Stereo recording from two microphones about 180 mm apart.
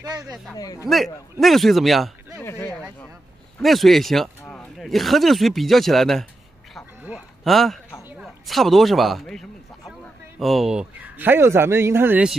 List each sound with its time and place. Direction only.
0.2 s speech: centre (ahead or behind)
0.6 s a man's voice: 20° left (ahead or behind)
0.8 s speech: centre (ahead or behind)
2.4 s speech: 15° left (ahead or behind)
3.5 s speech: centre (ahead or behind)
8.2 s a sound: centre (ahead or behind)
10.4 s speech: centre (ahead or behind)